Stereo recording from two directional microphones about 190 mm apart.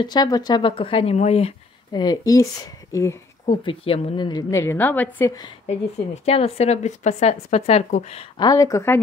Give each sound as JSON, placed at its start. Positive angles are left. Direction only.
{"t": 0.0, "sound": "speech", "side_deg": 20}
{"t": 1.9, "sound": "speech", "side_deg": 20}
{"t": 2.9, "sound": "a sound", "side_deg": 15}
{"t": 3.6, "sound": "a woman's voice", "side_deg": 30}
{"t": 6.2, "sound": "speech", "side_deg": 30}